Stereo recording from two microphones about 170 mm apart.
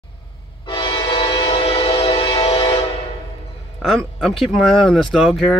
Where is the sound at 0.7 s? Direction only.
30° left (ahead or behind).